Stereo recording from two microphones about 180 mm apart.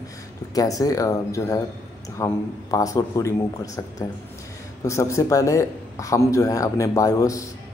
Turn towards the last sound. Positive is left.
turn(degrees=20)  # may be behind; listen again after turning